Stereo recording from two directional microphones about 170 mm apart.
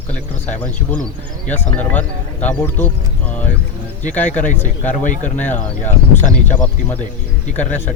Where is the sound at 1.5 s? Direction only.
10° left (ahead or behind).